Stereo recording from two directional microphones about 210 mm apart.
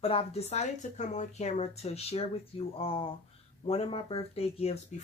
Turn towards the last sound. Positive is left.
turn(degrees=30)  # may be behind; listen again after turning